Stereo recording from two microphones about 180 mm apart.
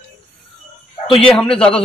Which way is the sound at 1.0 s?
30° left (ahead or behind).